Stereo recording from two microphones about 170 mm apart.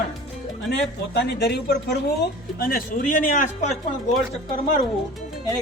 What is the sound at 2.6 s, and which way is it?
Speech, 60° left (ahead or behind).